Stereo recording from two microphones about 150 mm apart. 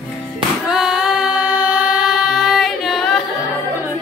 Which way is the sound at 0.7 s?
5° right (ahead or behind).